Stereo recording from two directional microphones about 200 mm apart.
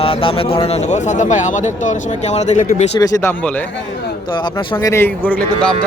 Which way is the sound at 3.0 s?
15° left (ahead or behind).